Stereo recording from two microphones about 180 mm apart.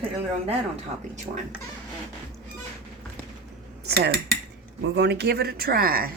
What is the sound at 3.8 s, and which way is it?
Speech, 65° right (ahead or behind).